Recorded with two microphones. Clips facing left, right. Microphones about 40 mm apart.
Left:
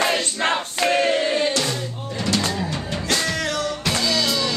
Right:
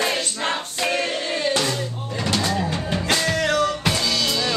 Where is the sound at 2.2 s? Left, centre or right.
Centre.